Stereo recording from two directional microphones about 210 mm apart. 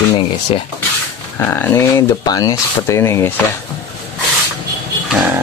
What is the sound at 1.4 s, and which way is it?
Speech, 10° left (ahead or behind).